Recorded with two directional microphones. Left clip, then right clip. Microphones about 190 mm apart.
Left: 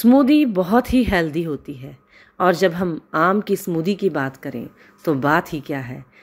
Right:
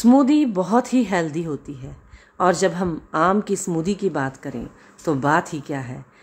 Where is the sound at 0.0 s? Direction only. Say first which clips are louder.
Left 2 dB; 10° left (ahead or behind).